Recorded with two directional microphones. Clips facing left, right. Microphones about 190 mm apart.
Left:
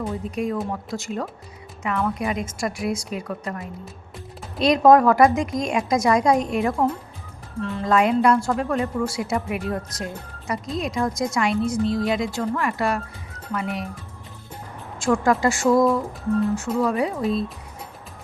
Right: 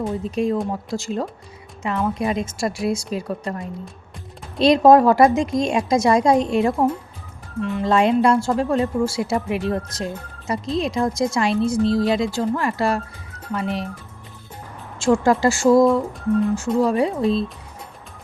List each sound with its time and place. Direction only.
0.0 s speech: 30° right (ahead or behind)
4.6 s speech: 30° right (ahead or behind)
14.9 s speech: 25° right (ahead or behind)